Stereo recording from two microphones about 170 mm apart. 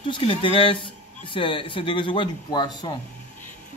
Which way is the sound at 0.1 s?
30° left (ahead or behind).